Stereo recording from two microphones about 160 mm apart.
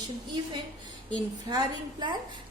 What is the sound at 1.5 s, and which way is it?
Speech, 25° right (ahead or behind).